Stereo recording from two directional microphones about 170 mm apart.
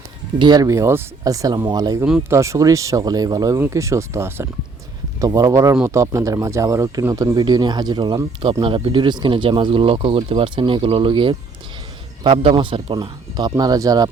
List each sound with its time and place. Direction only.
0.3 s speech: 25° right (ahead or behind)